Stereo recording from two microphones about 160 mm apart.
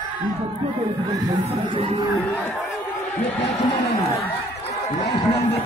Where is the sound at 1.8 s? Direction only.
35° right (ahead or behind).